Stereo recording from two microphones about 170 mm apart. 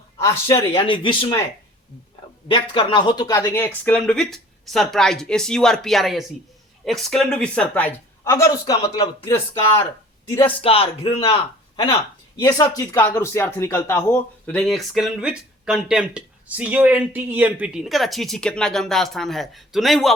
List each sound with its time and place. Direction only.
0.2 s speech: 20° left (ahead or behind)
0.7 s speech: 30° left (ahead or behind)
2.5 s speech: 30° left (ahead or behind); by 9.6 s 15° left (ahead or behind)
10.4 s speech: 35° left (ahead or behind)
12.4 s speech: 20° left (ahead or behind); by 20.1 s centre (ahead or behind)